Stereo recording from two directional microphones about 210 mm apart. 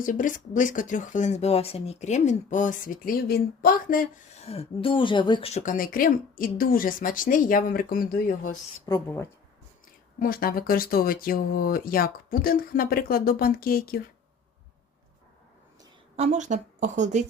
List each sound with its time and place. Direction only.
0.0 s speech: 40° left (ahead or behind)
8.9 s speech: 10° left (ahead or behind)
10.2 s speech: 45° left (ahead or behind)
16.1 s speech: 35° right (ahead or behind)